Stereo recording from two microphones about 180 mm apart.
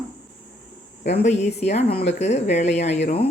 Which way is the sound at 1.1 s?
40° left (ahead or behind).